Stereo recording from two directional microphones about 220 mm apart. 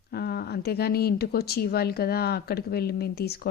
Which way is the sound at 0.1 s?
45° left (ahead or behind).